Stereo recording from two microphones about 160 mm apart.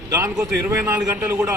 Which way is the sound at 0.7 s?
15° right (ahead or behind).